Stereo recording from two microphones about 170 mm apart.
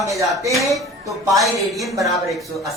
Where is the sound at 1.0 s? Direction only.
20° right (ahead or behind).